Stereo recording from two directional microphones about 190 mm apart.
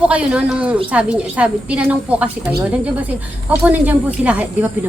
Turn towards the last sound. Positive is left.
turn(degrees=-5)  # may be behind; listen again after turning